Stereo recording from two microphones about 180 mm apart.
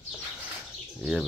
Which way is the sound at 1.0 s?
Centre (ahead or behind).